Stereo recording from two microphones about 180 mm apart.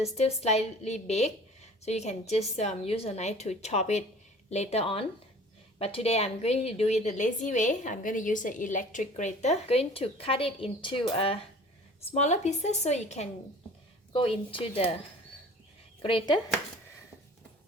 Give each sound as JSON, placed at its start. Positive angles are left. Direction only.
{"t": 0.0, "sound": "a woman's voice", "side_deg": 35}
{"t": 12.1, "sound": "a woman's voice", "side_deg": 40}
{"t": 16.0, "sound": "speech", "side_deg": 25}